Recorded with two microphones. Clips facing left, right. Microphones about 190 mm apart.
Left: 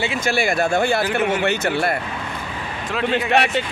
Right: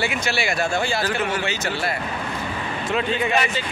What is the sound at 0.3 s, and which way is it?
Speech, 50° left (ahead or behind).